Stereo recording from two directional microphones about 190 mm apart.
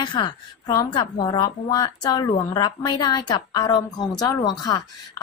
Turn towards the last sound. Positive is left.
turn(degrees=20)  # may be behind; listen again after turning